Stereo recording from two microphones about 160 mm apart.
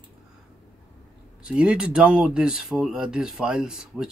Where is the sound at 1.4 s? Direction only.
5° right (ahead or behind).